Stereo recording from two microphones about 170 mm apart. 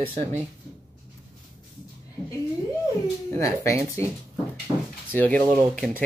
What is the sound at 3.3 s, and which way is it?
Speech, 15° left (ahead or behind).